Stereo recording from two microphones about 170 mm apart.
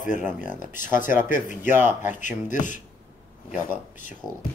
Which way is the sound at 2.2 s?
50° left (ahead or behind).